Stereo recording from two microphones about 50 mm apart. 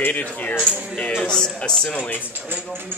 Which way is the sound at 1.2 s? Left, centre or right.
Centre.